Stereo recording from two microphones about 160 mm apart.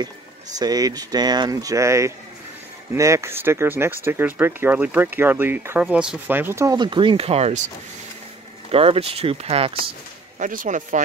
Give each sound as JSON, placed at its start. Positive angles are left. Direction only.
{"t": 0.6, "sound": "speech", "side_deg": -25}
{"t": 8.7, "sound": "speech", "side_deg": -35}
{"t": 10.4, "sound": "speech", "side_deg": -55}